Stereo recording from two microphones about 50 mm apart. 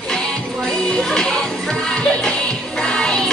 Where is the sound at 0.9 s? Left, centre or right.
Centre.